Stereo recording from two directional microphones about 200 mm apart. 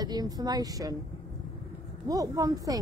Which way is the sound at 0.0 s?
20° right (ahead or behind).